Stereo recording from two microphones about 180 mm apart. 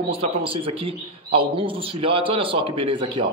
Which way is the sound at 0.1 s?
30° right (ahead or behind).